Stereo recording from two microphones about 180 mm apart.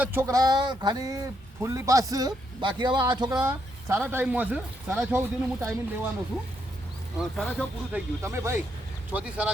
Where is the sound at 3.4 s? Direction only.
10° right (ahead or behind).